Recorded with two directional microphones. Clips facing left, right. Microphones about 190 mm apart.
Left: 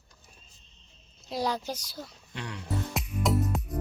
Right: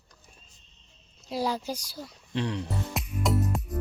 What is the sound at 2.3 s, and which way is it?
Speech, 30° right (ahead or behind).